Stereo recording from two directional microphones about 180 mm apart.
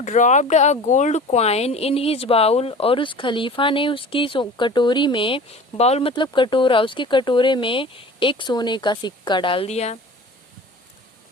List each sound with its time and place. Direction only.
0.0 s speech: 45° left (ahead or behind)